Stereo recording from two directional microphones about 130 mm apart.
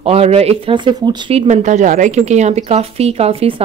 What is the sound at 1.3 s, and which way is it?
Speech, 65° right (ahead or behind).